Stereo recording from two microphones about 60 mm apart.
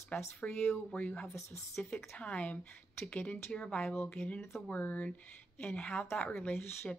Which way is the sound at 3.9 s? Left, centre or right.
Left.